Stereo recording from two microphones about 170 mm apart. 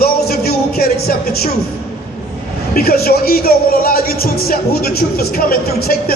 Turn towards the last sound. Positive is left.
turn(degrees=60)  # may be behind; listen again after turning